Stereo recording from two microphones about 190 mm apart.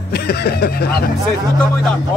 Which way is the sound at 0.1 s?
55° left (ahead or behind).